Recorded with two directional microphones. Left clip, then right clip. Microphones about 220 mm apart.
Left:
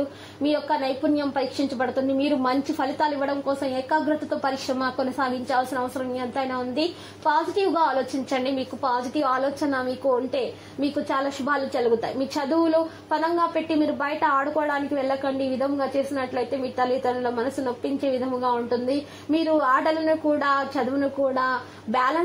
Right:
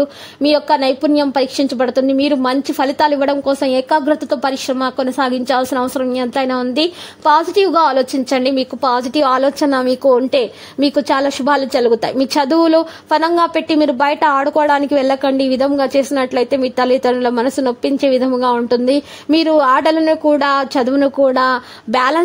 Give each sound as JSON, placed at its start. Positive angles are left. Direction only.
{"t": 0.4, "sound": "a woman's voice", "side_deg": -40}
{"t": 5.1, "sound": "a woman's voice", "side_deg": -45}